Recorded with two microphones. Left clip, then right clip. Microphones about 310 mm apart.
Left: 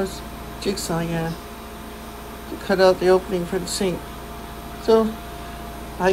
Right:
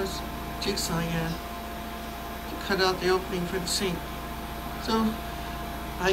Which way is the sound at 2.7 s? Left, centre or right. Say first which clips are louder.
Left 9 dB; centre.